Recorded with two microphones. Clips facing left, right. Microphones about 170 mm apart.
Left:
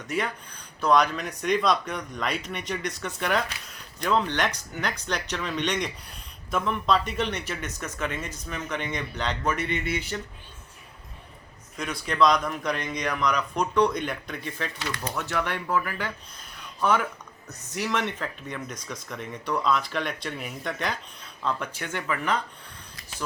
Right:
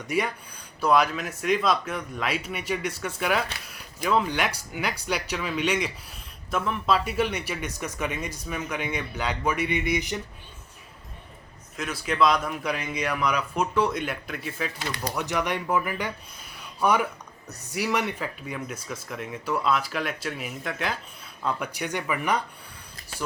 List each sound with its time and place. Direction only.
0.1 s speech: 10° right (ahead or behind)
11.8 s speech: 5° right (ahead or behind)
15.1 s speech: 15° right (ahead or behind)